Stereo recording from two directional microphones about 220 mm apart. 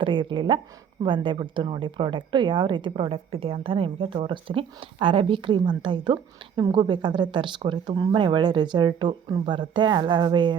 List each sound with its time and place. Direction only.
0.0 s a woman's voice: 25° right (ahead or behind)